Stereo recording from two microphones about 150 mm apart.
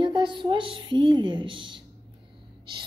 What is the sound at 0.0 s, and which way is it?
A woman's voice, 30° right (ahead or behind).